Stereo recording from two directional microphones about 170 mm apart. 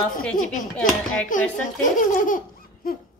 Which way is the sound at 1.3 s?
50° left (ahead or behind).